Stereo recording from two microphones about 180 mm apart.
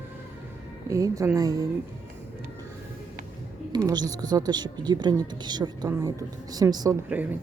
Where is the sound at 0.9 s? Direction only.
20° right (ahead or behind).